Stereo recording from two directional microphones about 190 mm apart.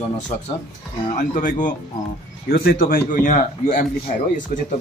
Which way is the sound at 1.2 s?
45° left (ahead or behind).